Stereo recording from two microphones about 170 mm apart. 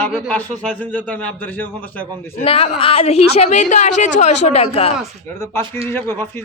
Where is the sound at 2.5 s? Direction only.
35° left (ahead or behind).